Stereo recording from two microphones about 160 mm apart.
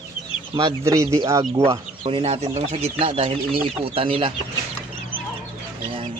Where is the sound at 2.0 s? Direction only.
35° right (ahead or behind).